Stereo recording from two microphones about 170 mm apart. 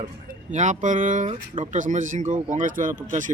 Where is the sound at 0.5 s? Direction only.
45° right (ahead or behind).